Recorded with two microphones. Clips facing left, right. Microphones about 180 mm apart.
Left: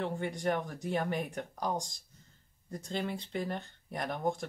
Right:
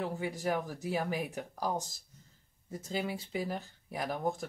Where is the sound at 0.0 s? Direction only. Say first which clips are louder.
Left 1 dB; 5° right (ahead or behind).